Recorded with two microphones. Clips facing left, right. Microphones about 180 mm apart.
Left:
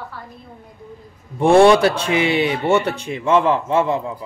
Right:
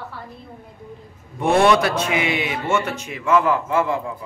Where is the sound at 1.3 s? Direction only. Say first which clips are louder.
Left 5 dB; 30° left (ahead or behind).